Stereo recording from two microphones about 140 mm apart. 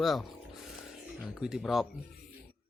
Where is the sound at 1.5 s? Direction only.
Centre (ahead or behind).